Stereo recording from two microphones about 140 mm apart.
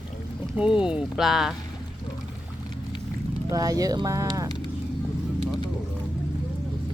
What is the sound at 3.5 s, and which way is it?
Speech, 25° right (ahead or behind).